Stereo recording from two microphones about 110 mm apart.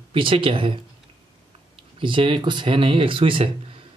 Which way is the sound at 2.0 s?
50° right (ahead or behind).